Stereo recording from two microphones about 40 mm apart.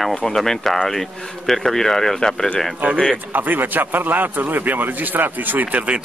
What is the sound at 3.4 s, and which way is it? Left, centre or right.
A man's voice, right.